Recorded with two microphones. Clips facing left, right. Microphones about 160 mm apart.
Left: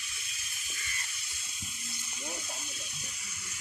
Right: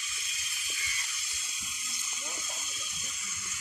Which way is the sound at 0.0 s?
60° left (ahead or behind).